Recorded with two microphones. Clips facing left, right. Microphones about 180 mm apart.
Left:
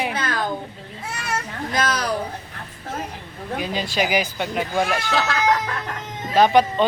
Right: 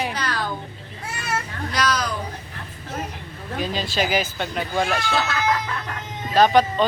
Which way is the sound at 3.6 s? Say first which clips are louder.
Even; 20° left (ahead or behind).